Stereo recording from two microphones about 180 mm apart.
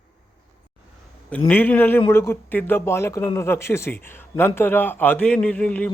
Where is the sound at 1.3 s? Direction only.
10° left (ahead or behind).